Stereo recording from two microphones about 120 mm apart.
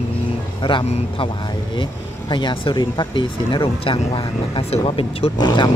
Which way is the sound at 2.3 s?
45° left (ahead or behind).